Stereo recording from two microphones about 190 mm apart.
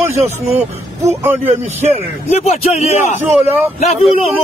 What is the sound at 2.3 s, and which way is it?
Speech, 35° left (ahead or behind).